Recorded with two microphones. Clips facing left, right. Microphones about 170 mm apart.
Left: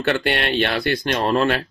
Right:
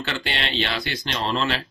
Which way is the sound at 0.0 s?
55° left (ahead or behind).